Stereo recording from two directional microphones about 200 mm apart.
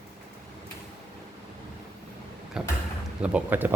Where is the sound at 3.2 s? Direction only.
10° right (ahead or behind).